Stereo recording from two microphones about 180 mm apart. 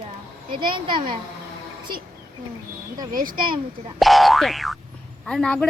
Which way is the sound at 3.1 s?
55° right (ahead or behind).